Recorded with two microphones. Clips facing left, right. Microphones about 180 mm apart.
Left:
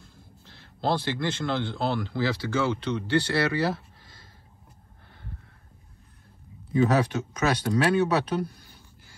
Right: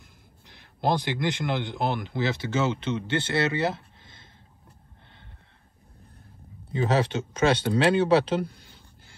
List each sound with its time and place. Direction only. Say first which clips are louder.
0.0 s a man's voice: left 3 dB; 15° right (ahead or behind)
6.7 s speech: left 2 dB; 25° right (ahead or behind)